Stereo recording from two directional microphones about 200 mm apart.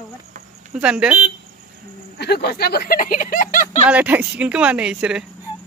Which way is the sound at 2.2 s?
55° left (ahead or behind).